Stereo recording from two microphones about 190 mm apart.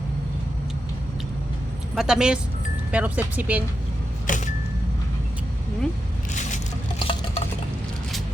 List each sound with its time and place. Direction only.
2.0 s speech: 5° right (ahead or behind)
4.3 s music: 40° left (ahead or behind)
7.0 s a sound: 25° left (ahead or behind)